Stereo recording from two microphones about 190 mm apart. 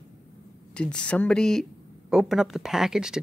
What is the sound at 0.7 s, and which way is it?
Speech, 5° left (ahead or behind).